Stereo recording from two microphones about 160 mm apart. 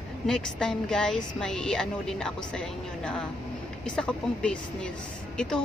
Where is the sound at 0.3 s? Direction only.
5° left (ahead or behind).